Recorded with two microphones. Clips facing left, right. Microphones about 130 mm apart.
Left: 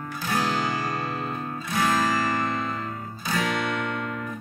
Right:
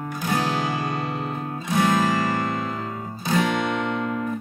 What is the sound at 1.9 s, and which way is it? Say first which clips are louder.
Music: right 1 dB; 20° right (ahead or behind).